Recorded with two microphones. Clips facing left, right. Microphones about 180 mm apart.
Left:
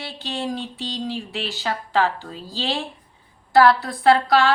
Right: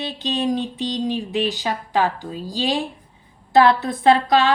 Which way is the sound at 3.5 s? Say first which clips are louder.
Right 1 dB; 20° right (ahead or behind).